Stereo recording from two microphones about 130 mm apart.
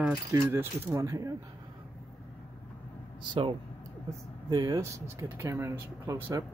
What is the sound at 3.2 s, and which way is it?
Speech, 40° right (ahead or behind).